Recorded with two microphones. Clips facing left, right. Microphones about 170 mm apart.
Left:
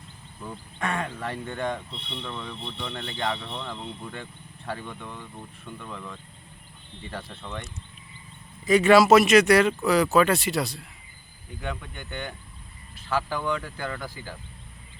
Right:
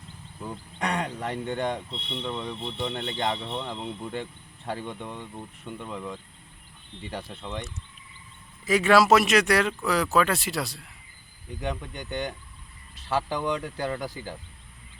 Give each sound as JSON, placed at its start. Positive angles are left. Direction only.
{"t": 0.8, "sound": "speech", "side_deg": -20}
{"t": 8.6, "sound": "speech", "side_deg": 0}
{"t": 11.6, "sound": "speech", "side_deg": -20}